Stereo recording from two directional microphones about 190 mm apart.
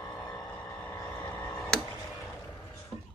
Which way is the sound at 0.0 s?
10° left (ahead or behind).